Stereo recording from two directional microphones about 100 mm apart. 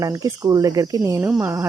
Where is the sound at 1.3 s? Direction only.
20° right (ahead or behind).